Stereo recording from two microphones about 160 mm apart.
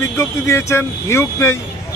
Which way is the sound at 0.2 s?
15° left (ahead or behind).